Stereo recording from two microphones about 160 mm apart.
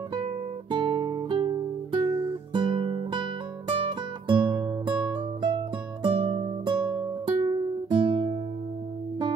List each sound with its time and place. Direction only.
0.1 s guitar: 30° right (ahead or behind)
3.7 s music: 30° right (ahead or behind)